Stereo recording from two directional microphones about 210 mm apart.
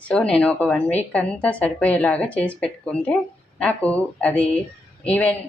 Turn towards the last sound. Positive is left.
turn(degrees=5)  # may be behind; listen again after turning